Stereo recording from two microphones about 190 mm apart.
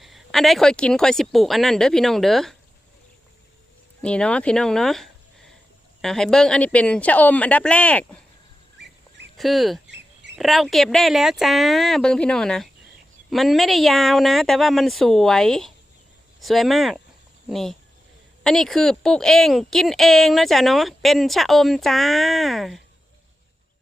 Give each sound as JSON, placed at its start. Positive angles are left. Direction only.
{"t": 0.0, "sound": "a woman's voice", "side_deg": 0}
{"t": 4.0, "sound": "speech", "side_deg": 5}
{"t": 9.4, "sound": "a woman's voice", "side_deg": 0}